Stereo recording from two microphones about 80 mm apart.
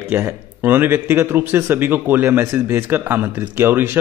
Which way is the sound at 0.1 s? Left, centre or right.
Right.